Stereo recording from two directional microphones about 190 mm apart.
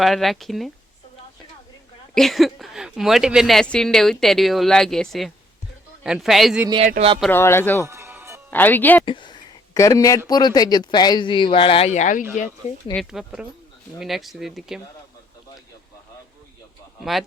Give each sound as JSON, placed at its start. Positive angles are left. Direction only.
{"t": 0.0, "sound": "speech", "side_deg": 0}
{"t": 2.1, "sound": "speech", "side_deg": 0}
{"t": 6.8, "sound": "speech", "side_deg": -40}
{"t": 7.3, "sound": "speech", "side_deg": 10}
{"t": 7.9, "sound": "music", "side_deg": -15}
{"t": 8.4, "sound": "speech", "side_deg": 10}
{"t": 9.0, "sound": "speech", "side_deg": 25}
{"t": 12.9, "sound": "speech", "side_deg": 0}
{"t": 17.0, "sound": "speech", "side_deg": 0}